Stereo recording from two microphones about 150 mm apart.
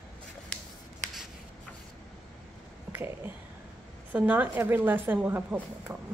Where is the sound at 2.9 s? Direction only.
15° right (ahead or behind).